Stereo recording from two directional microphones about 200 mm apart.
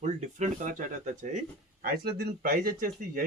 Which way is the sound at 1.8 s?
50° right (ahead or behind).